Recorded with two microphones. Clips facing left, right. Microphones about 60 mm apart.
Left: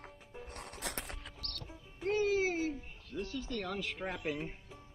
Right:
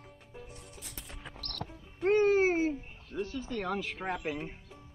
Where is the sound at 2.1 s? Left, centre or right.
Right.